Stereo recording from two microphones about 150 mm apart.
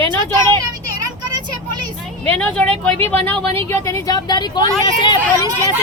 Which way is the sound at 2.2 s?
10° left (ahead or behind).